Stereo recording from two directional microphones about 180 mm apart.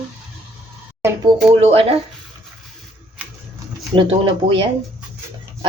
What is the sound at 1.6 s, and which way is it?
Speech, 35° right (ahead or behind).